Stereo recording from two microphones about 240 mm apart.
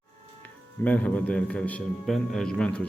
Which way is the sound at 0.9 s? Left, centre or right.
Centre.